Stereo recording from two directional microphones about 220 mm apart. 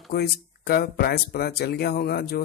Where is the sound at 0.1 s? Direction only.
45° left (ahead or behind).